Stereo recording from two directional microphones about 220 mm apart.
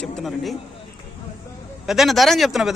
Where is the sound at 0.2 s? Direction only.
Centre (ahead or behind).